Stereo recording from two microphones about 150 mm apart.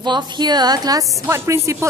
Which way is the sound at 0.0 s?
30° right (ahead or behind).